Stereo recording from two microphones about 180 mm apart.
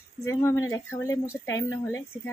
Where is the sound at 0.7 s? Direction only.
15° left (ahead or behind).